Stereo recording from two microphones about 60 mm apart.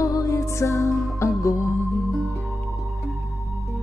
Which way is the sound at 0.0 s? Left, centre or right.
Left.